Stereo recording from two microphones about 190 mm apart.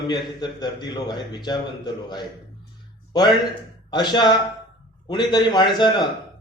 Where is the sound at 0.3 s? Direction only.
25° left (ahead or behind).